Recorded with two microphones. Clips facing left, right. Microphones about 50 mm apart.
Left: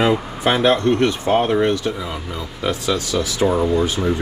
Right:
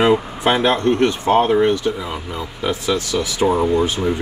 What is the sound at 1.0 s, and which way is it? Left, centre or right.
Speech, right.